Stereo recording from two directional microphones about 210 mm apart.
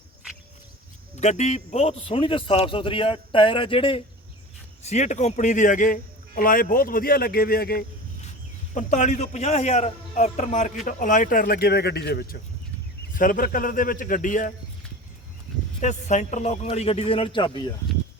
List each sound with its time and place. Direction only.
1.1 s a man's voice: 35° left (ahead or behind)
8.7 s a man's voice: 35° left (ahead or behind)
15.8 s a man's voice: 35° left (ahead or behind)